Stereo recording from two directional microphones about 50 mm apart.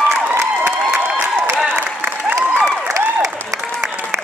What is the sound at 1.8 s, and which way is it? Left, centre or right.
Applause, right.